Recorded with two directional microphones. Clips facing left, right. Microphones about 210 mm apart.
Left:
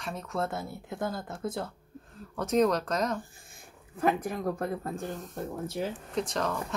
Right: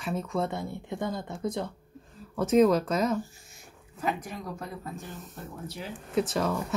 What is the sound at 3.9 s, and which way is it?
Speech, 55° left (ahead or behind).